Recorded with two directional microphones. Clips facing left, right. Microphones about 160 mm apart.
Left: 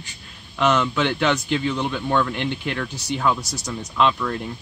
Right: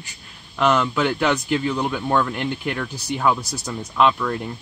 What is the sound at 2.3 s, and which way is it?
Speech, 40° right (ahead or behind).